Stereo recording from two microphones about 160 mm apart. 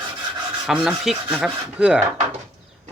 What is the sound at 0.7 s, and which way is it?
Speech, 5° right (ahead or behind).